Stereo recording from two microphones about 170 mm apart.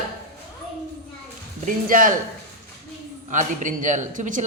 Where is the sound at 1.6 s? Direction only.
50° right (ahead or behind).